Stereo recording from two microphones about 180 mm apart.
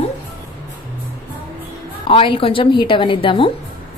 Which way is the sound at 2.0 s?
30° left (ahead or behind).